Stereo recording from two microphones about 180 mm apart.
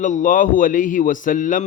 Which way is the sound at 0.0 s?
45° left (ahead or behind).